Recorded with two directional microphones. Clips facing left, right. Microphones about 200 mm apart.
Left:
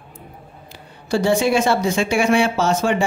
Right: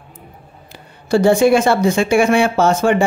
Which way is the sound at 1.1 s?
55° right (ahead or behind).